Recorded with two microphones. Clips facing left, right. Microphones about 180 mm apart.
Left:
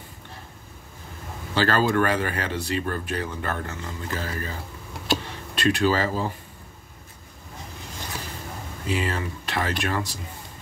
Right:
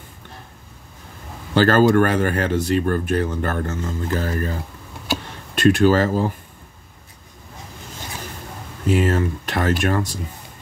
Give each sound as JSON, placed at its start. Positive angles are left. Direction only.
{"t": 1.5, "sound": "speech", "side_deg": -50}
{"t": 5.5, "sound": "speech", "side_deg": -45}
{"t": 8.8, "sound": "speech", "side_deg": -45}